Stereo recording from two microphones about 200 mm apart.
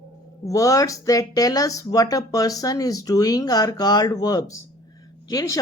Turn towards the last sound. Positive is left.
turn(degrees=15)  # may be behind; listen again after turning